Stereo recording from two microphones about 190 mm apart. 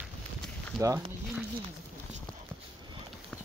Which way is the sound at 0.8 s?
15° right (ahead or behind).